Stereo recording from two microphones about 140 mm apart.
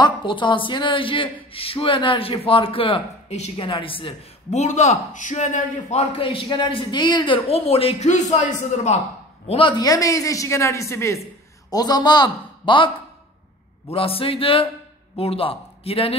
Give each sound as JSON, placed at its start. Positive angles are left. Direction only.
{"t": 0.0, "sound": "a woman's voice", "side_deg": 35}
{"t": 3.5, "sound": "speech", "side_deg": 35}
{"t": 6.1, "sound": "speech", "side_deg": 40}
{"t": 9.5, "sound": "a woman's voice", "side_deg": 35}